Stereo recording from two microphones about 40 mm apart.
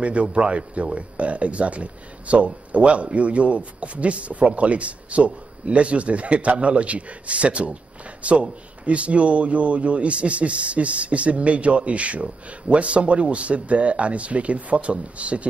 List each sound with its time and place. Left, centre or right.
0.0 s speech: right